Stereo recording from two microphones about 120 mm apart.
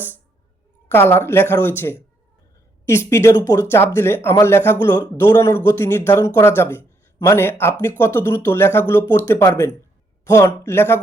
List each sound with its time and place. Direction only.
0.9 s a man's voice: 20° left (ahead or behind)